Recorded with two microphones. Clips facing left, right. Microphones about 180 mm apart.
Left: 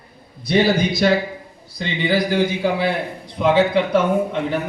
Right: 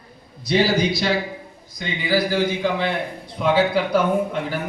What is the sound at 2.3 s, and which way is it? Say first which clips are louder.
Speech: left 2 dB; 15° left (ahead or behind).